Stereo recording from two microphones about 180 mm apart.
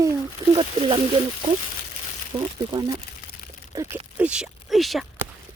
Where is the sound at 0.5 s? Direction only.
25° right (ahead or behind).